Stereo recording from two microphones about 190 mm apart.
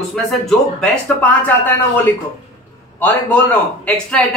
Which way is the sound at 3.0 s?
10° left (ahead or behind).